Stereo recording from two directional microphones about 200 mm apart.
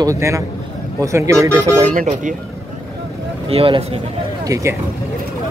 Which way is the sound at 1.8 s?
40° right (ahead or behind).